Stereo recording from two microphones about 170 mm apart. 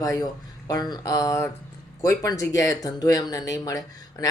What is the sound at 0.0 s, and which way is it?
Speech, 20° left (ahead or behind).